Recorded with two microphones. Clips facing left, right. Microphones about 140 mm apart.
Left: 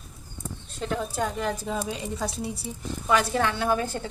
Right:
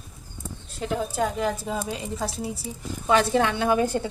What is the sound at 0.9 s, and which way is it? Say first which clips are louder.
A woman's voice: right 3 dB; 5° right (ahead or behind).